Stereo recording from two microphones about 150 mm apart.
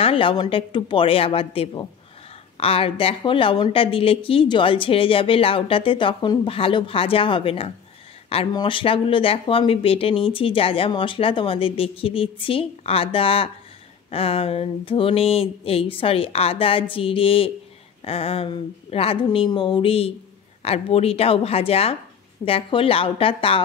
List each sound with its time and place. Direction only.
0.0 s a woman's voice: 35° left (ahead or behind)